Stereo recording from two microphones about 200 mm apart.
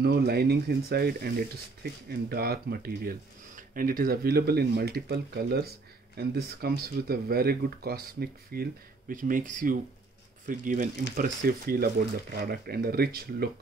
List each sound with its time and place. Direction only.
0.0 s speech: 50° right (ahead or behind)